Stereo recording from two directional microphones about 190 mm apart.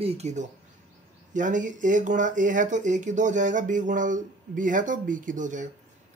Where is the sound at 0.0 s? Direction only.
35° right (ahead or behind).